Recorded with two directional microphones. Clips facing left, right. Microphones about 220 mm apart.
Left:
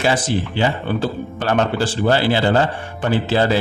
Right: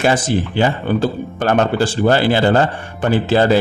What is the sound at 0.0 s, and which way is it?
A man's voice, 50° right (ahead or behind).